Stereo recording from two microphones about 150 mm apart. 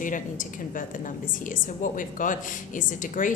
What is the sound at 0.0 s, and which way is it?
A woman's voice, 60° left (ahead or behind).